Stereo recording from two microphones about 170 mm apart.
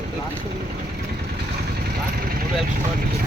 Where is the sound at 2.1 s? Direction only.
60° right (ahead or behind).